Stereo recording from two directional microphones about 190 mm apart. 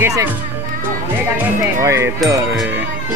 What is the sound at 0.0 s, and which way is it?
Speech, 10° right (ahead or behind).